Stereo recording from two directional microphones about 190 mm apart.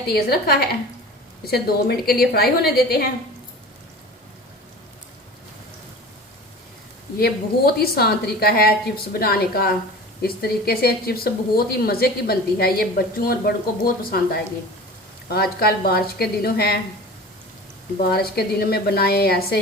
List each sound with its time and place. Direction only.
0.1 s a woman's voice: 55° left (ahead or behind)
7.2 s a woman's voice: 55° left (ahead or behind)
18.1 s a woman's voice: 55° left (ahead or behind)